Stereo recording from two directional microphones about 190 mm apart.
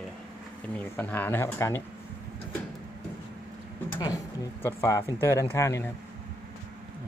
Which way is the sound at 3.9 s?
20° left (ahead or behind).